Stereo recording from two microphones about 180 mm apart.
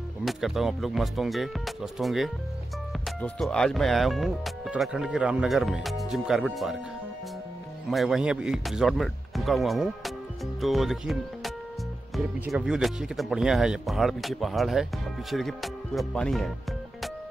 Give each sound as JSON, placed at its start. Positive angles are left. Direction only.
{"t": 0.2, "sound": "speech", "side_deg": 0}
{"t": 7.9, "sound": "speech", "side_deg": 0}